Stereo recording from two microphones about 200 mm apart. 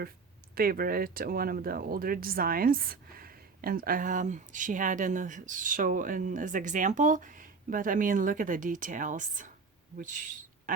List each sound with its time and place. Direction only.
0.5 s speech: 50° right (ahead or behind)